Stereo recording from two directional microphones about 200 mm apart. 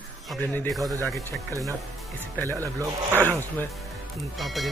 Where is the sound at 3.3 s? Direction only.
10° left (ahead or behind).